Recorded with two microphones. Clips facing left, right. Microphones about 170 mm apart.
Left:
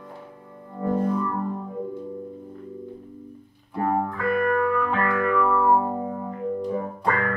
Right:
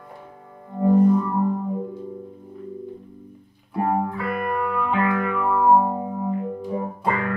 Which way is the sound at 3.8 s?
20° right (ahead or behind).